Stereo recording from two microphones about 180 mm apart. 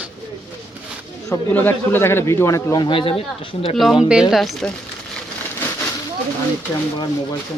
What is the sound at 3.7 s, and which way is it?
Speech, centre (ahead or behind).